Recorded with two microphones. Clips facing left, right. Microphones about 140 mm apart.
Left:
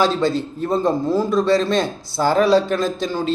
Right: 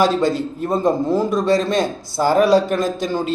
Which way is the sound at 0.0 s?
45° right (ahead or behind).